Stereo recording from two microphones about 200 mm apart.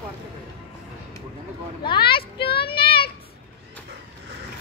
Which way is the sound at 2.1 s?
50° left (ahead or behind).